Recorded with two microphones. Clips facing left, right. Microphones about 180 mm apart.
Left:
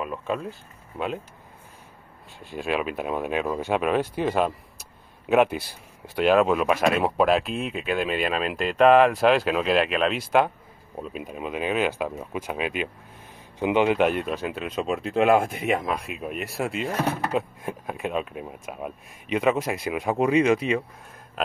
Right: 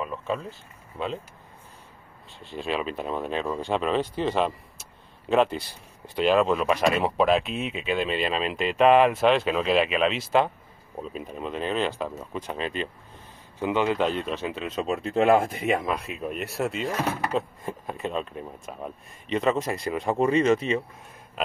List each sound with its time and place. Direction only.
0.0 s a sound: 5° left (ahead or behind)
0.9 s speech: 10° left (ahead or behind)
2.5 s speech: 5° left (ahead or behind)